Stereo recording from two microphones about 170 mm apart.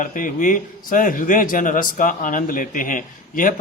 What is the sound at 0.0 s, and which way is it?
A man's voice, 50° left (ahead or behind).